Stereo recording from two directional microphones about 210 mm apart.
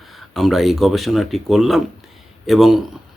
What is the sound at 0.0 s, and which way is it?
A man's voice, centre (ahead or behind).